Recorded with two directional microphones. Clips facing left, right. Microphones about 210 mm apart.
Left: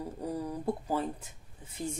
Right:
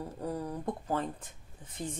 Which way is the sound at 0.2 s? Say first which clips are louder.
Even; 10° left (ahead or behind).